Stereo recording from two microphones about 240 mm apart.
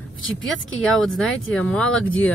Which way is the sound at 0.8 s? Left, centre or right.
Centre.